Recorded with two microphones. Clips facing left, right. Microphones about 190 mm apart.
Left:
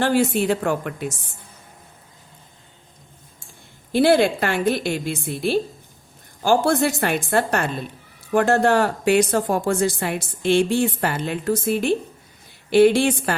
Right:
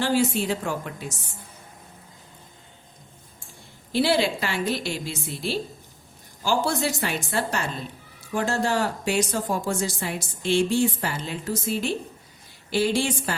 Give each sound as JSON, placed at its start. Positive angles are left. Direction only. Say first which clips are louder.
{"t": 0.0, "sound": "speech", "louder": "left 4 dB", "side_deg": 55}
{"t": 3.9, "sound": "speech", "louder": "left 6 dB", "side_deg": 55}